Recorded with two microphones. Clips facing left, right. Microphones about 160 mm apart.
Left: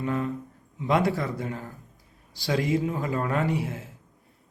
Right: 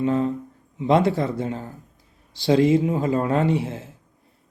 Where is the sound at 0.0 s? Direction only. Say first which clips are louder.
Right 7 dB; 25° right (ahead or behind).